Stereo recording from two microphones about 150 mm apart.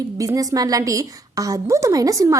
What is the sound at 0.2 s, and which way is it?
A woman's voice, 25° right (ahead or behind).